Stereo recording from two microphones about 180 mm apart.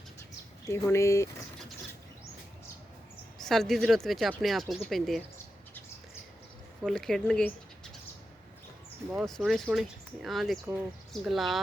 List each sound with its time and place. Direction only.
0.6 s speech: 15° left (ahead or behind)
3.4 s speech: centre (ahead or behind)
6.8 s speech: 5° left (ahead or behind)
9.1 s speech: centre (ahead or behind)